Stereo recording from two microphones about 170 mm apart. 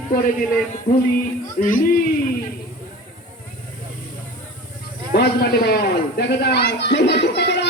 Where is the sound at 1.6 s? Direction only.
55° left (ahead or behind).